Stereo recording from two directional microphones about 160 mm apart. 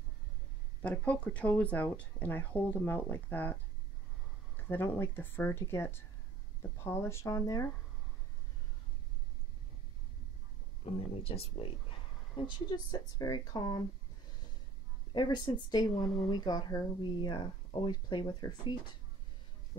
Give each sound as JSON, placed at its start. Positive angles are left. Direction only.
{"t": 0.8, "sound": "speech", "side_deg": 10}
{"t": 4.6, "sound": "speech", "side_deg": 15}
{"t": 10.9, "sound": "speech", "side_deg": 35}
{"t": 15.1, "sound": "speech", "side_deg": 25}